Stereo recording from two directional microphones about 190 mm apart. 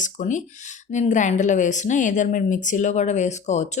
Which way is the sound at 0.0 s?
40° left (ahead or behind).